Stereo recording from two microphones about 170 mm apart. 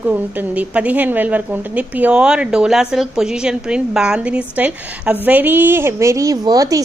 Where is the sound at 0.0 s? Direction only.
10° right (ahead or behind).